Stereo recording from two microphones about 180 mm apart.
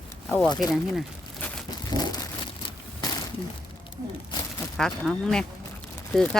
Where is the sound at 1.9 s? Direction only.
20° left (ahead or behind).